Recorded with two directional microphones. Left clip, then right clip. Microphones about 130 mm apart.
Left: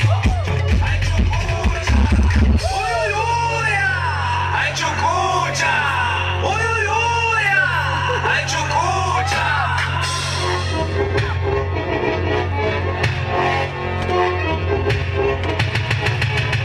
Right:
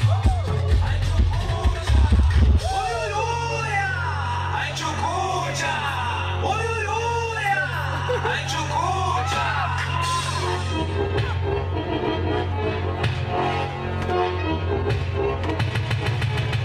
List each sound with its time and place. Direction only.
2.7 s music: 15° left (ahead or behind)
11.9 s music: 20° left (ahead or behind)